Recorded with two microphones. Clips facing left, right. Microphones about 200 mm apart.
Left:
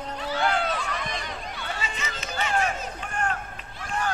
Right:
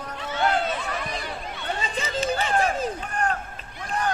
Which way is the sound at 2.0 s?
30° right (ahead or behind).